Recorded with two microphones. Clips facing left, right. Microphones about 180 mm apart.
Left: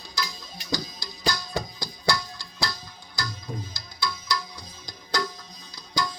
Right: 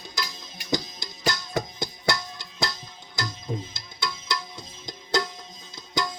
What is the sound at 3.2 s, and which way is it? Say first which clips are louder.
Tabla: right 3 dB; 20° right (ahead or behind).